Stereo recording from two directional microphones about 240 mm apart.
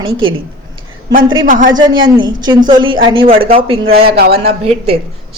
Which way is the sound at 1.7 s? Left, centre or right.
Centre.